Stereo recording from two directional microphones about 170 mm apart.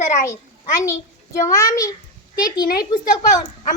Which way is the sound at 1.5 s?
20° left (ahead or behind).